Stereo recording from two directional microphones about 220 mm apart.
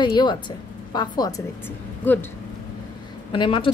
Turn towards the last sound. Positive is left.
turn(degrees=20)  # may be behind; listen again after turning